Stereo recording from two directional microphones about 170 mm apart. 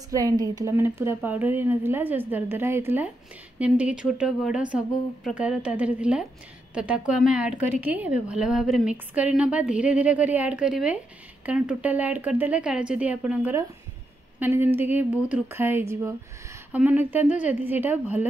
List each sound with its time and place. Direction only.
0.1 s a woman's voice: 20° right (ahead or behind)